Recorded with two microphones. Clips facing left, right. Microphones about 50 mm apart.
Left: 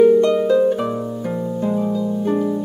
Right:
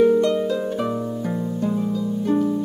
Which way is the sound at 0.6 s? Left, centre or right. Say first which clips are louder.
Left 7 dB; centre.